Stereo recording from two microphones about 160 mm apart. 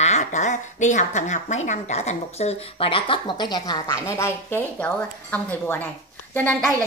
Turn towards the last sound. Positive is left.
turn(degrees=10)  # may be behind; listen again after turning